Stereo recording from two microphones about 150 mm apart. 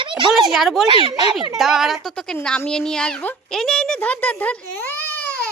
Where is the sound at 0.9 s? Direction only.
35° right (ahead or behind).